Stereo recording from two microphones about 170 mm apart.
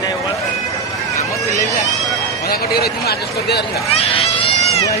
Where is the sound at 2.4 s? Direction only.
65° left (ahead or behind).